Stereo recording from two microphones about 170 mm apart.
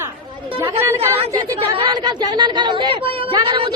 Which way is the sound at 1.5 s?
35° right (ahead or behind).